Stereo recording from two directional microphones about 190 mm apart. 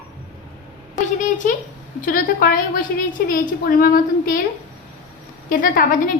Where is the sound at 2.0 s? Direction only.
45° left (ahead or behind).